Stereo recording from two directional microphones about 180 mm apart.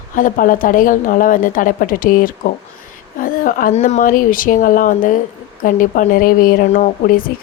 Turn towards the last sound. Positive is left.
turn(degrees=50)  # may be behind; listen again after turning